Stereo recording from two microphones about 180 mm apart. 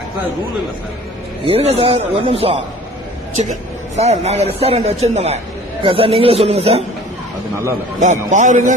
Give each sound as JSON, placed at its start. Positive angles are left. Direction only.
{"t": 1.5, "sound": "a man's voice", "side_deg": -30}
{"t": 3.9, "sound": "a man's voice", "side_deg": -35}
{"t": 7.9, "sound": "a man's voice", "side_deg": -40}